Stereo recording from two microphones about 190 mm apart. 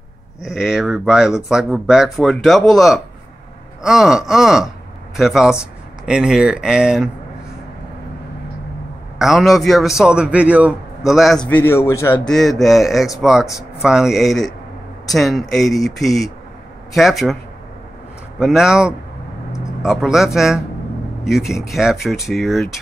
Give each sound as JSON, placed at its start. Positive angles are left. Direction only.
{"t": 0.4, "sound": "speech", "side_deg": 0}
{"t": 9.2, "sound": "speech", "side_deg": 0}
{"t": 11.4, "sound": "a man's voice", "side_deg": 10}
{"t": 12.3, "sound": "speech", "side_deg": 0}
{"t": 18.4, "sound": "speech", "side_deg": -5}